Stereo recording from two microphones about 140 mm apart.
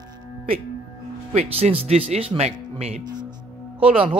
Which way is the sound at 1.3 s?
45° right (ahead or behind).